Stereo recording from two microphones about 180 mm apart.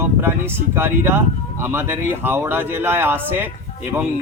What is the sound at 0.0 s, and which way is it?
Speech, 10° right (ahead or behind).